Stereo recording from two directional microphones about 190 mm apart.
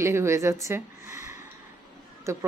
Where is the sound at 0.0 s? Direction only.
15° right (ahead or behind).